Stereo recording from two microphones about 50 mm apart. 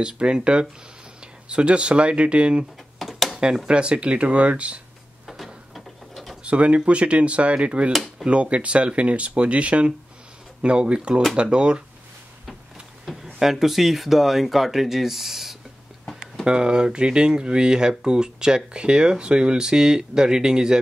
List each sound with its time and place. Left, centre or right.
0.0 s speech: centre
3.0 s a sound: centre
3.6 s speech: centre
5.2 s a sound: centre
6.4 s speech: right
13.0 s speech: centre
16.4 s speech: centre